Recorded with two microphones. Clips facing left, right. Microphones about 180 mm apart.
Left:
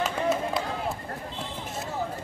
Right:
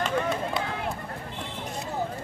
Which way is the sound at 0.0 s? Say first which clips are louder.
Left 1 dB; 5° left (ahead or behind).